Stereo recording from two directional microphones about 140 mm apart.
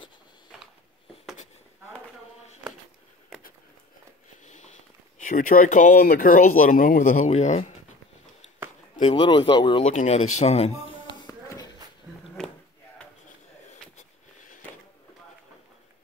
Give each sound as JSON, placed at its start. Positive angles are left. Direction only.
{"t": 4.5, "sound": "a sound", "side_deg": 60}
{"t": 5.2, "sound": "speech", "side_deg": 75}
{"t": 9.1, "sound": "speech", "side_deg": 35}
{"t": 9.8, "sound": "speech", "side_deg": 55}
{"t": 11.2, "sound": "shuffle", "side_deg": 25}
{"t": 12.4, "sound": "a sound", "side_deg": 5}